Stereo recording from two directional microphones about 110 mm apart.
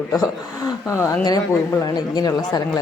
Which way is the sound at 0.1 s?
30° left (ahead or behind).